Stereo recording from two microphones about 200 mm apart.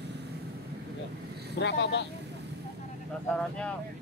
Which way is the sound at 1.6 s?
60° left (ahead or behind).